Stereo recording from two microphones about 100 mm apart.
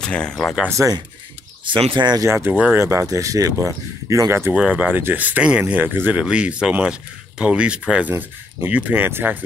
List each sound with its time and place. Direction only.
0.0 s speech: 10° left (ahead or behind)
0.8 s speech: 30° right (ahead or behind)
2.0 s speech: 45° right (ahead or behind)
2.2 s speech: 25° right (ahead or behind)
2.5 s speech: 10° right (ahead or behind)
2.8 s speech: 30° right (ahead or behind)
4.6 s speech: 15° right (ahead or behind)